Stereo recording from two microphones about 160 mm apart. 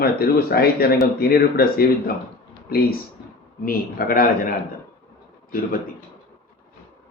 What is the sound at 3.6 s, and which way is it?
Speech, 65° left (ahead or behind).